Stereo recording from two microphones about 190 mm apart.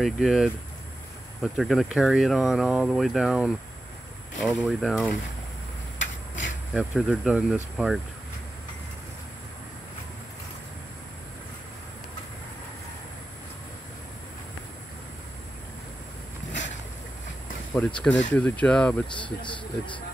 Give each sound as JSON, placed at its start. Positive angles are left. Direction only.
{"t": 0.0, "sound": "speech", "side_deg": 0}
{"t": 5.9, "sound": "a sound", "side_deg": 75}
{"t": 6.7, "sound": "speech", "side_deg": 0}
{"t": 17.7, "sound": "speech", "side_deg": 5}
{"t": 19.1, "sound": "speech", "side_deg": 25}